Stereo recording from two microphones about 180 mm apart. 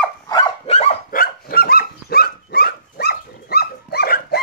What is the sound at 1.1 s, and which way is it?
Dog, 55° left (ahead or behind).